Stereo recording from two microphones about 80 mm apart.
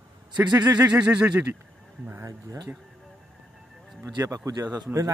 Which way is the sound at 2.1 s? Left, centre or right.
Right.